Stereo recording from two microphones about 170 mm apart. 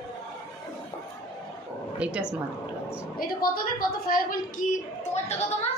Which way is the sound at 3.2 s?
60° left (ahead or behind).